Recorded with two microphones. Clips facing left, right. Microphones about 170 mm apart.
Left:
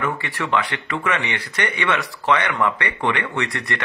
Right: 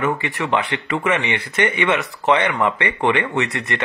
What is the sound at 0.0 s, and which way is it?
Speech, 20° right (ahead or behind).